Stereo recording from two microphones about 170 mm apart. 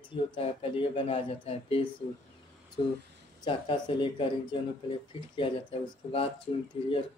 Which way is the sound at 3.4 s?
30° left (ahead or behind).